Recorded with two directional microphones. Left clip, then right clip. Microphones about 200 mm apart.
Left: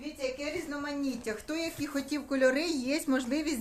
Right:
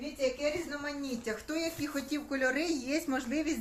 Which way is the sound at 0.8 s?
40° left (ahead or behind).